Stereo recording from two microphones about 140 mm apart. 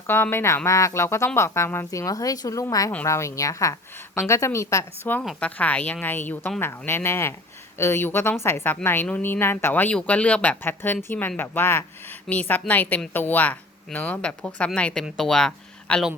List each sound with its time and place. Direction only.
0.1 s a woman's voice: 15° left (ahead or behind)
5.2 s speech: centre (ahead or behind)
5.5 s a woman's voice: 10° left (ahead or behind)